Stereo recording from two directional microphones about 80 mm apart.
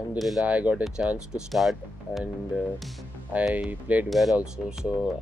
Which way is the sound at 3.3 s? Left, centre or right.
Centre.